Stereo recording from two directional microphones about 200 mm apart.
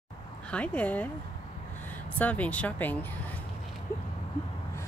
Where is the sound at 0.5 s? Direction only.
5° left (ahead or behind).